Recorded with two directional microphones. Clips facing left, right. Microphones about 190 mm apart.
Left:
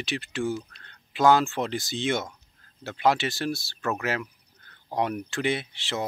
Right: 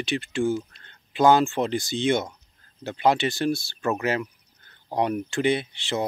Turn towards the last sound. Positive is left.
turn(degrees=0)  # may be behind; listen again after turning